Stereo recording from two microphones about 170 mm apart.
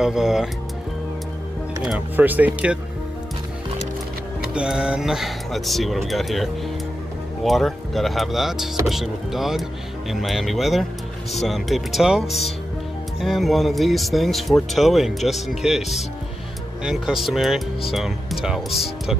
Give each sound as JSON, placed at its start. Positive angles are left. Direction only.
{"t": 0.0, "sound": "speech", "side_deg": 0}
{"t": 1.9, "sound": "speech", "side_deg": -10}
{"t": 4.6, "sound": "speech", "side_deg": -5}